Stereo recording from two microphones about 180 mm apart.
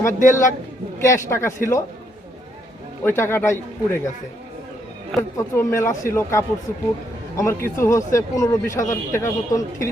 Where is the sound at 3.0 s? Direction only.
10° left (ahead or behind).